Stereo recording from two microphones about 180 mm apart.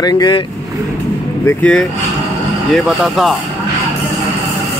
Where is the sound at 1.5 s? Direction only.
5° left (ahead or behind).